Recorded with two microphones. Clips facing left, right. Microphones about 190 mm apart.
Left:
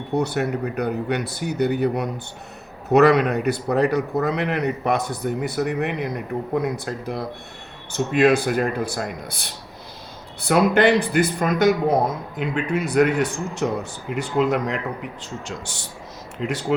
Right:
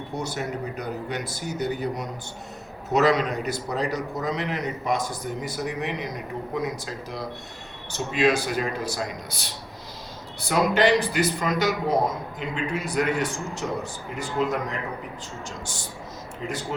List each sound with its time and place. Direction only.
0.2 s a man's voice: 65° left (ahead or behind)
10.5 s a man's voice: 55° left (ahead or behind); by 16.6 s 70° left (ahead or behind)